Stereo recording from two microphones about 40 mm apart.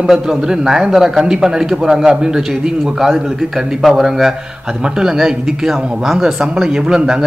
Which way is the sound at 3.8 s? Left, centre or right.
Centre.